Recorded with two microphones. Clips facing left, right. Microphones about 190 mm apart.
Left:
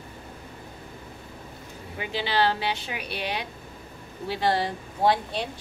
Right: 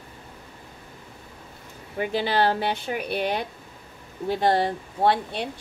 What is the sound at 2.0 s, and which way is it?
Speech, 50° right (ahead or behind).